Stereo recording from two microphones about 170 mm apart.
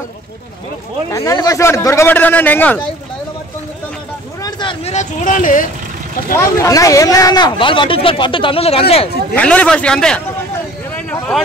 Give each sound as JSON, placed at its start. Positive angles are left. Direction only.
{"t": 1.1, "sound": "speech", "side_deg": 20}
{"t": 4.4, "sound": "a sound", "side_deg": 25}
{"t": 4.9, "sound": "speech", "side_deg": 50}
{"t": 6.3, "sound": "speech", "side_deg": 20}
{"t": 9.3, "sound": "speech", "side_deg": 10}
{"t": 11.0, "sound": "a sound", "side_deg": 10}